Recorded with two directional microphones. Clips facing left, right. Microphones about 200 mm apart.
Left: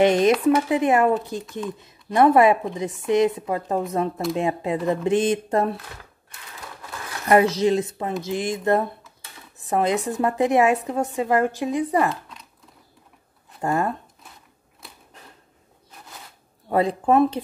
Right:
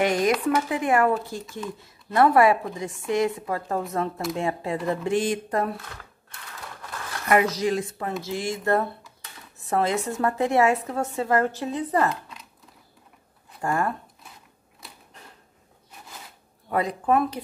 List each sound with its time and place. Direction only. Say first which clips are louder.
0.0 s speech: left 5 dB; 25° left (ahead or behind)
7.2 s a woman's voice: left 4 dB; 30° left (ahead or behind); by 12.1 s 10° left (ahead or behind)
12.1 s a sound: left 1 dB; centre (ahead or behind)
13.6 s speech: left 2 dB; 20° left (ahead or behind)
16.6 s speech: left 4 dB; 30° left (ahead or behind)